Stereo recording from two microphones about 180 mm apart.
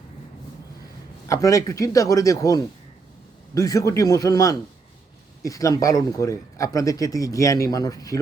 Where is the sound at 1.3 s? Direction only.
20° left (ahead or behind).